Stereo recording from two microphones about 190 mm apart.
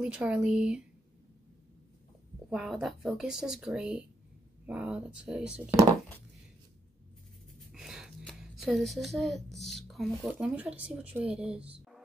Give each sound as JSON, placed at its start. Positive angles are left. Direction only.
{"t": 0.0, "sound": "speech", "side_deg": -5}
{"t": 2.5, "sound": "speech", "side_deg": 0}
{"t": 7.7, "sound": "speech", "side_deg": -5}
{"t": 11.7, "sound": "music", "side_deg": 0}